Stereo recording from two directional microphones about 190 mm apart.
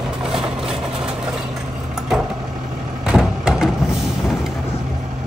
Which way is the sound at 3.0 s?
5° right (ahead or behind).